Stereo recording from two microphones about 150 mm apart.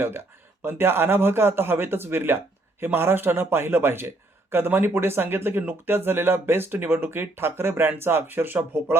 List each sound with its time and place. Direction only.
0.6 s speech: 15° right (ahead or behind)